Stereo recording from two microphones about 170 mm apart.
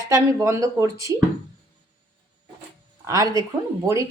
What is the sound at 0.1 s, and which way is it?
Speech, 15° right (ahead or behind).